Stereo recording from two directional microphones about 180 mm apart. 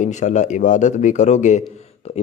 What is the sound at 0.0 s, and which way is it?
A man's voice, 40° left (ahead or behind).